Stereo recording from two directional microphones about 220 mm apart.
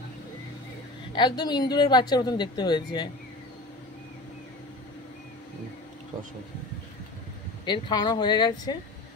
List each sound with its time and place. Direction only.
1.1 s a woman's voice: 20° left (ahead or behind)
7.6 s a woman's voice: 20° left (ahead or behind)